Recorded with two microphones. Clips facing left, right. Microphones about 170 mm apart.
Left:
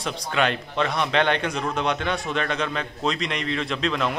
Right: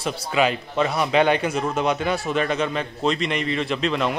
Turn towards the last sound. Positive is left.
turn(degrees=0)  # may be behind; listen again after turning